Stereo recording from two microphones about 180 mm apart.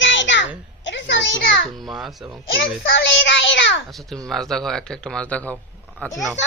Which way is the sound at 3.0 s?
90° left.